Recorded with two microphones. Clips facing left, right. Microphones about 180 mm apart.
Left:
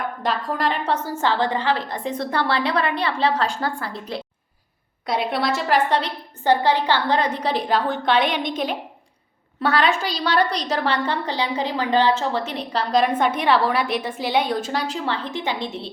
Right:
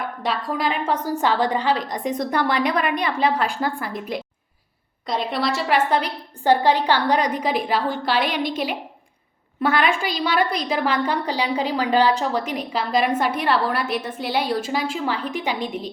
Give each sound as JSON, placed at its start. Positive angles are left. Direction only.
{"t": 0.3, "sound": "a woman's voice", "side_deg": -5}
{"t": 5.0, "sound": "a woman's voice", "side_deg": 5}
{"t": 9.8, "sound": "a woman's voice", "side_deg": -10}